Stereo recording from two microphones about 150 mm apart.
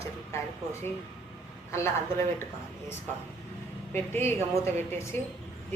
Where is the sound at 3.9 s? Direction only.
15° left (ahead or behind).